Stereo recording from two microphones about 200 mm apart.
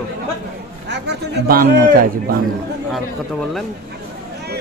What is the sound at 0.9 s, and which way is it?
A man's voice, 55° right (ahead or behind).